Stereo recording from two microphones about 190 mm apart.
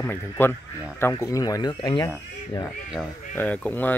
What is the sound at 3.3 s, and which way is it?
Speech, 10° left (ahead or behind).